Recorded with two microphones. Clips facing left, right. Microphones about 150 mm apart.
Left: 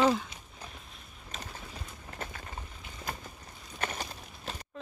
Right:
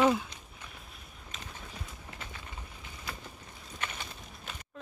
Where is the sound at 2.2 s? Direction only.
50° left (ahead or behind).